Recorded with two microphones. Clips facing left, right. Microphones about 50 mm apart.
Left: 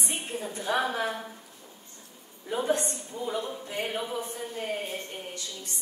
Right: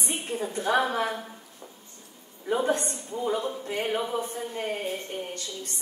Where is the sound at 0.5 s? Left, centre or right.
Right.